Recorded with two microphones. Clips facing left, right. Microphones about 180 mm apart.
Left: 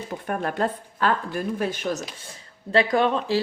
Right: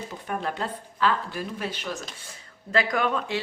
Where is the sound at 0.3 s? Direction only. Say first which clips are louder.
Left 5 dB; 50° left (ahead or behind).